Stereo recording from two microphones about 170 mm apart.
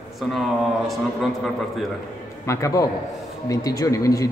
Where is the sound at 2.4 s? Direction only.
15° left (ahead or behind).